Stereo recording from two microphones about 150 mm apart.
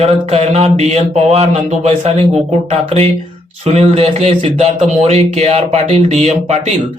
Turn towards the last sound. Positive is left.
turn(degrees=-50)  # may be behind; listen again after turning